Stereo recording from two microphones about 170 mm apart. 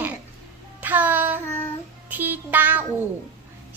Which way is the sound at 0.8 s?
10° right (ahead or behind).